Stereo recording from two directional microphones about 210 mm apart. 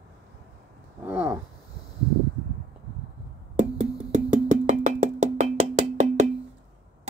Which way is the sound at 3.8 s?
35° right (ahead or behind).